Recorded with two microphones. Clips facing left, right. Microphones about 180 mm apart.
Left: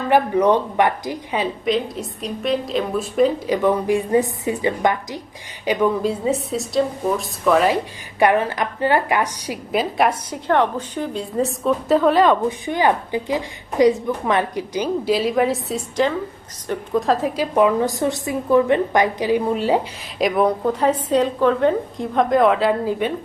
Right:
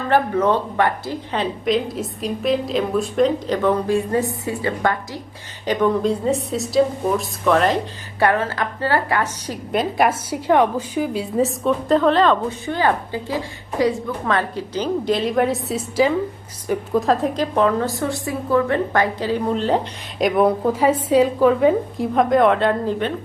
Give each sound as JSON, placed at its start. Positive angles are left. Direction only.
{"t": 0.1, "sound": "a woman's voice", "side_deg": 15}
{"t": 5.6, "sound": "a woman's voice", "side_deg": 5}
{"t": 8.2, "sound": "a woman's voice", "side_deg": 15}
{"t": 9.7, "sound": "a woman's voice", "side_deg": -5}